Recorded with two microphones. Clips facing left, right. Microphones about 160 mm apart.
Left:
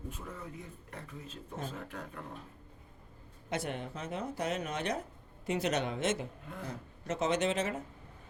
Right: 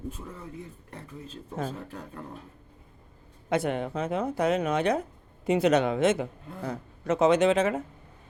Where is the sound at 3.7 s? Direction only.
80° right.